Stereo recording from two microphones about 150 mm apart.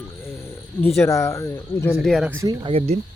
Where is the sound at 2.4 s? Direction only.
35° right (ahead or behind).